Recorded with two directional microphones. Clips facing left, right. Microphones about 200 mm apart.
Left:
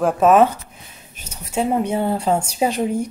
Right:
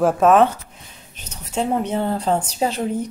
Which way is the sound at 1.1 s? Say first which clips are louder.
Left 2 dB; 10° left (ahead or behind).